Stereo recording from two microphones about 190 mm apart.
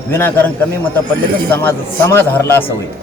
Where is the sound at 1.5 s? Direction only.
10° left (ahead or behind).